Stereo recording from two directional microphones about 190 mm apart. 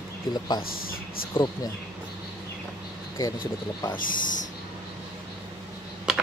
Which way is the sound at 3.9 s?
45° left (ahead or behind).